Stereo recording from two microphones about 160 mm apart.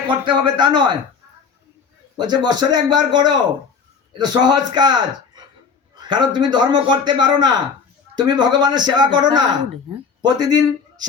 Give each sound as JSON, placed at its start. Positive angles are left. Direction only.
{"t": 0.1, "sound": "a man's voice", "side_deg": -30}
{"t": 2.1, "sound": "a man's voice", "side_deg": -25}